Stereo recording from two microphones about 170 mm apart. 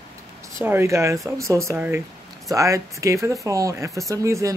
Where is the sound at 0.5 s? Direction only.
15° right (ahead or behind).